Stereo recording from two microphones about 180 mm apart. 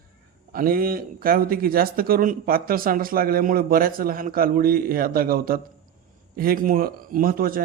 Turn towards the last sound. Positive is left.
turn(degrees=-50)  # may be behind; listen again after turning